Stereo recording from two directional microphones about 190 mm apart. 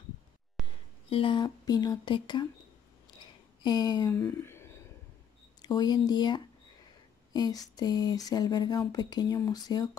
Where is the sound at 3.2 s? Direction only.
20° left (ahead or behind).